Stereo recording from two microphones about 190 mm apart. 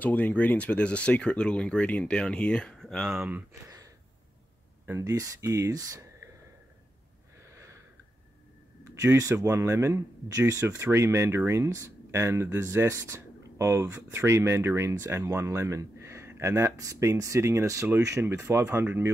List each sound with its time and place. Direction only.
0.0 s speech: 5° left (ahead or behind); by 3.7 s 10° right (ahead or behind)
4.8 s speech: 15° right (ahead or behind)
8.8 s speech: 15° right (ahead or behind)